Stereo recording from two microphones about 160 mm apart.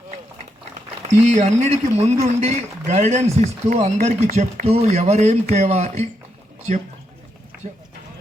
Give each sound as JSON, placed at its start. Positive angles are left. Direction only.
{"t": 1.2, "sound": "speech", "side_deg": -45}